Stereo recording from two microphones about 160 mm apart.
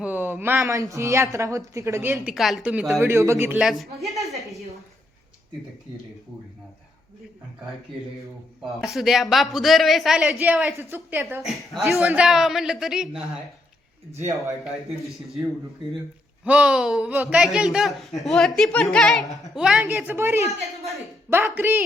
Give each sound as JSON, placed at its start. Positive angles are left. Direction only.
{"t": 0.0, "sound": "speech", "side_deg": -10}
{"t": 2.3, "sound": "speech", "side_deg": 0}
{"t": 3.0, "sound": "speech", "side_deg": -15}
{"t": 3.6, "sound": "speech", "side_deg": 0}
{"t": 8.8, "sound": "speech", "side_deg": 0}
{"t": 11.4, "sound": "speech", "side_deg": 0}
{"t": 16.4, "sound": "speech", "side_deg": -10}